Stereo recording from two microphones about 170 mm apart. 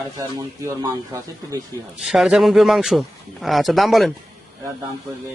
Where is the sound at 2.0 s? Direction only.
Centre (ahead or behind).